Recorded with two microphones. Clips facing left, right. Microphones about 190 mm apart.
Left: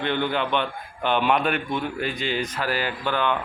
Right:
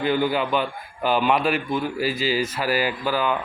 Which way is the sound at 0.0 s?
5° right (ahead or behind).